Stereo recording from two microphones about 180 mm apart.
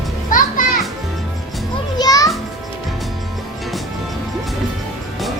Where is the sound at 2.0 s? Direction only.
20° left (ahead or behind).